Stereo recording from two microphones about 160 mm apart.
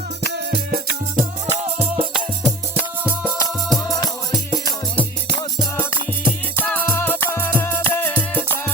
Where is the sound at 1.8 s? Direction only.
35° right (ahead or behind).